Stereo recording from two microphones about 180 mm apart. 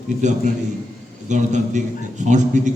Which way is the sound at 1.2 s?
40° right (ahead or behind).